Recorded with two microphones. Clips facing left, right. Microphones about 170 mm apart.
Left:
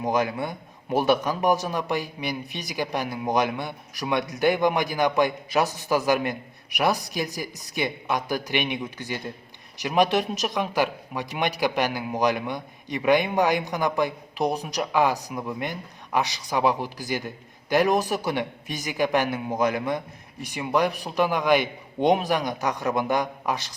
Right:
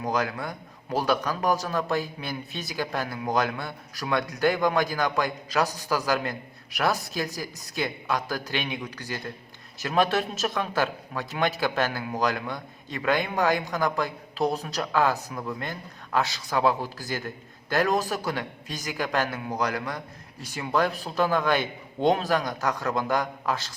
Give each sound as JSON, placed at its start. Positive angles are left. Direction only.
{"t": 0.0, "sound": "a man's voice", "side_deg": 20}